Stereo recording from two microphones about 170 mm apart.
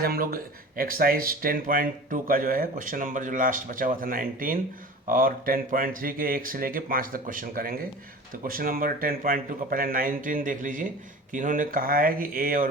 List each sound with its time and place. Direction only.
0.0 s speech: 60° right (ahead or behind)